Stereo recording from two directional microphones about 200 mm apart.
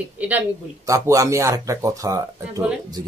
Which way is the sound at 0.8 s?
15° right (ahead or behind).